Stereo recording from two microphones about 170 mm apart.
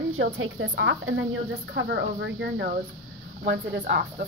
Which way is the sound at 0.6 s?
90° right.